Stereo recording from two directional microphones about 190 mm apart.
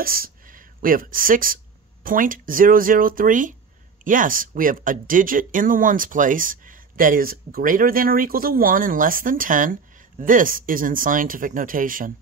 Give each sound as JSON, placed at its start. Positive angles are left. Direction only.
{"t": 0.0, "sound": "speech", "side_deg": -50}